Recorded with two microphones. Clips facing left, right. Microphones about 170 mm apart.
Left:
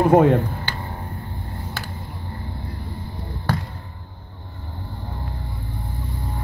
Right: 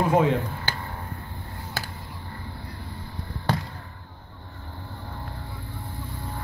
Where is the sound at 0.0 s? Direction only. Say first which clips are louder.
Left 6 dB; 50° left (ahead or behind).